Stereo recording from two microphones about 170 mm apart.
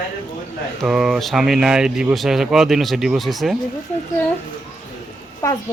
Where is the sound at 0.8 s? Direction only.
Centre (ahead or behind).